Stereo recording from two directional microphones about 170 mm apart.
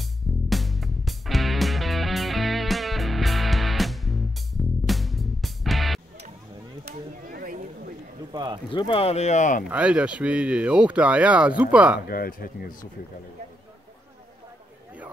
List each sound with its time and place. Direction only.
0.5 s music: centre (ahead or behind)
6.8 s a sound: 60° right (ahead or behind)
8.3 s a sound: 25° right (ahead or behind)
8.7 s speech: 30° left (ahead or behind); by 9.7 s 50° left (ahead or behind)
9.7 s speech: 10° right (ahead or behind)
12.1 s speech: 60° left (ahead or behind)